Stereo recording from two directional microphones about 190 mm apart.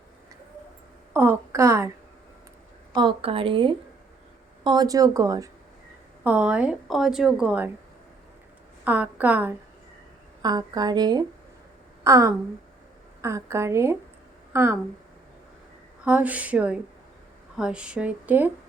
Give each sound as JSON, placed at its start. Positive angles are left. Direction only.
{"t": 1.1, "sound": "a sound", "side_deg": -10}
{"t": 2.9, "sound": "a woman's voice", "side_deg": -25}
{"t": 6.2, "sound": "a woman's voice", "side_deg": -5}
{"t": 8.8, "sound": "a woman's voice", "side_deg": -10}
{"t": 10.4, "sound": "a woman's voice", "side_deg": -20}
{"t": 16.0, "sound": "a woman's voice", "side_deg": -10}